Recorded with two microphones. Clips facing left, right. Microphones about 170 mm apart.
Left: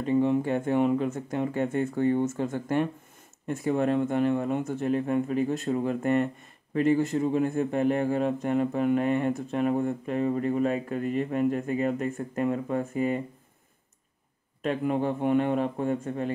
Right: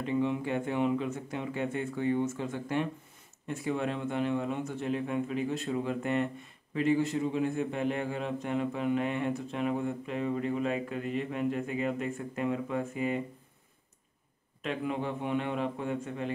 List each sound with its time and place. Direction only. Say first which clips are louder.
0.0 s speech: left 6 dB; 45° left (ahead or behind)
14.6 s speech: left 6 dB; 45° left (ahead or behind)